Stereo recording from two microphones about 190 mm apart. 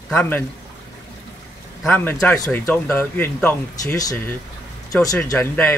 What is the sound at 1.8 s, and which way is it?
Speech, 5° left (ahead or behind).